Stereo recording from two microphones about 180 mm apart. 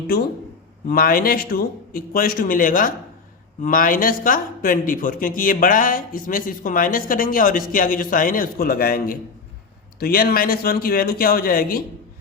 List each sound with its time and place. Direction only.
0.9 s speech: 55° left (ahead or behind)